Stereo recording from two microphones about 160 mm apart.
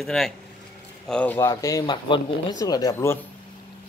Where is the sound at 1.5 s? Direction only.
20° left (ahead or behind).